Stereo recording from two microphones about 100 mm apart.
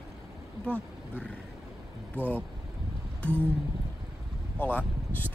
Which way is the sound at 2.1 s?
20° right (ahead or behind).